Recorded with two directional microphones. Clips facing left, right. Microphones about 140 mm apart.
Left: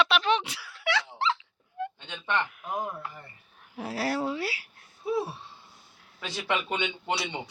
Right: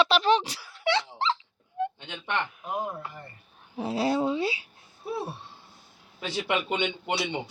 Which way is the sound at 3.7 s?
20° right (ahead or behind).